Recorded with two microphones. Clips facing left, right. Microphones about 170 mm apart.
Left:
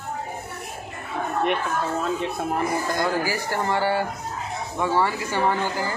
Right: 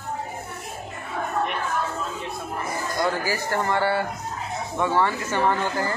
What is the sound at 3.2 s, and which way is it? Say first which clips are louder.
Speech: even; 15° left (ahead or behind).